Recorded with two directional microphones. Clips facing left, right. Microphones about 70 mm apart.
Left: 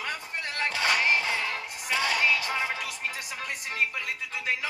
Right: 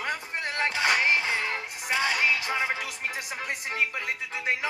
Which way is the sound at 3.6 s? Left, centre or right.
Right.